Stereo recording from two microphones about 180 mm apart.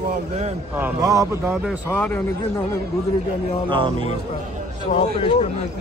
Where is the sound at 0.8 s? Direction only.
20° right (ahead or behind).